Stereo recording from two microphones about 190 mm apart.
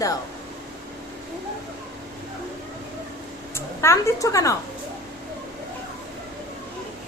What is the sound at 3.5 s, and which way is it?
A woman's voice, 15° left (ahead or behind).